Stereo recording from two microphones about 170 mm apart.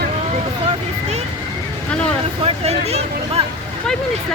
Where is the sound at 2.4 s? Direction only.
40° right (ahead or behind).